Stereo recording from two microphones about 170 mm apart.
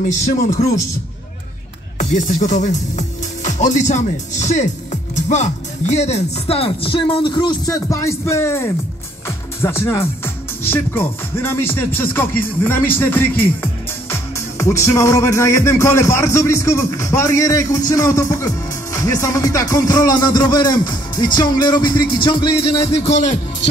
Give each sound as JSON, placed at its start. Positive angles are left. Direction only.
{"t": 0.0, "sound": "a man's voice", "side_deg": 50}
{"t": 2.0, "sound": "speech", "side_deg": 45}
{"t": 5.1, "sound": "music", "side_deg": 45}